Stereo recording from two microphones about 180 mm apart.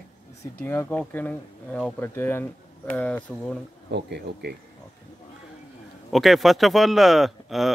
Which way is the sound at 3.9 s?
70° right (ahead or behind).